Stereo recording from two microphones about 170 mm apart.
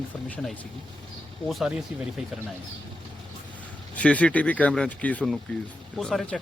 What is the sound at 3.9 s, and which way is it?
Speech, 10° left (ahead or behind).